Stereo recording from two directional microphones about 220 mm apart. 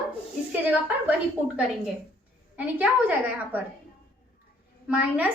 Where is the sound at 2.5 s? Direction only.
5° right (ahead or behind).